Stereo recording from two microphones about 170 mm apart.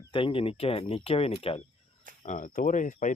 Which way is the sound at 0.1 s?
30° left (ahead or behind).